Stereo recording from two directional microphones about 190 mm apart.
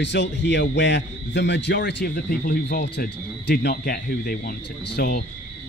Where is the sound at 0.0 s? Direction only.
65° left (ahead or behind).